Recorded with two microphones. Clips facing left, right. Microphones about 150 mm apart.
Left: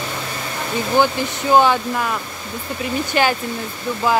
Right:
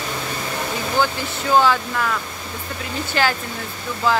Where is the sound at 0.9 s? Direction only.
20° left (ahead or behind).